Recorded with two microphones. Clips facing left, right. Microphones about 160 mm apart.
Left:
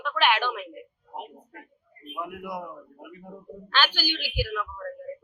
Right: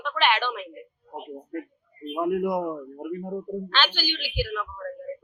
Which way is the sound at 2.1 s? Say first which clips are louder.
Right 11 dB; 50° right (ahead or behind).